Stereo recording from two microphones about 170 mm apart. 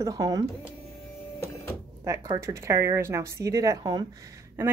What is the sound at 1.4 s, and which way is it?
Printer, 15° left (ahead or behind).